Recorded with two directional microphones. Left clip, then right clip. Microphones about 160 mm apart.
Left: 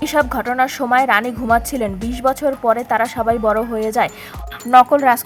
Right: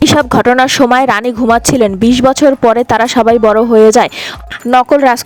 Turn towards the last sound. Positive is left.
turn(degrees=-55)  # may be behind; listen again after turning